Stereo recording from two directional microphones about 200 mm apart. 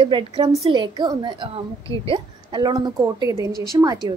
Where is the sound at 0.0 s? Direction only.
25° right (ahead or behind).